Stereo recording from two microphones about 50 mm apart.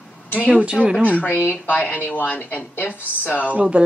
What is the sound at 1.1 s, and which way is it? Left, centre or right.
Speech, left.